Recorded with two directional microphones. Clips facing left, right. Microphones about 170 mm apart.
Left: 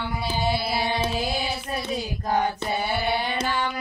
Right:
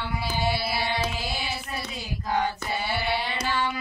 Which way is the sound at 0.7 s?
25° left (ahead or behind).